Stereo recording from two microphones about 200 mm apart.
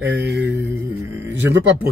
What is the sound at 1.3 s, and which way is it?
Speech, 65° right (ahead or behind).